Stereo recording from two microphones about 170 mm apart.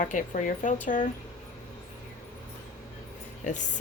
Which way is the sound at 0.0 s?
50° left (ahead or behind).